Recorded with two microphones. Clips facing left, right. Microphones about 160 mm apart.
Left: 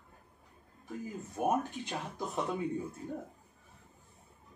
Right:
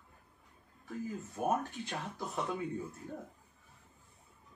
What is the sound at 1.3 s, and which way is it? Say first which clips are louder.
Speech: left 3 dB; 20° left (ahead or behind).